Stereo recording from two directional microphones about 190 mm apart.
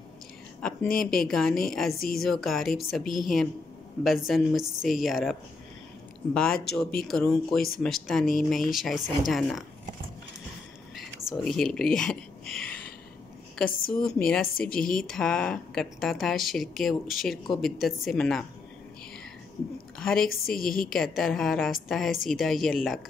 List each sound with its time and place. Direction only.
0.9 s speech: centre (ahead or behind)
2.0 s a woman's voice: 50° left (ahead or behind)
2.2 s speech: centre (ahead or behind)
11.2 s speech: centre (ahead or behind)
13.7 s a woman's voice: 50° left (ahead or behind)
14.0 s speech: 5° left (ahead or behind)
20.0 s a woman's voice: 5° left (ahead or behind)
20.2 s a woman's voice: 50° left (ahead or behind)
20.9 s speech: centre (ahead or behind)